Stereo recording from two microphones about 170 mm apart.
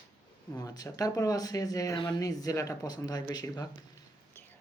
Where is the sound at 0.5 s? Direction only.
20° left (ahead or behind).